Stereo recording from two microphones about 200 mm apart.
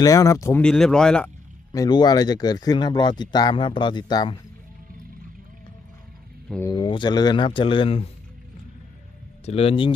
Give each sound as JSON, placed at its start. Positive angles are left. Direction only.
{"t": 0.0, "sound": "speech", "side_deg": 15}
{"t": 1.7, "sound": "speech", "side_deg": 20}
{"t": 6.7, "sound": "speech", "side_deg": 25}
{"t": 9.5, "sound": "speech", "side_deg": 30}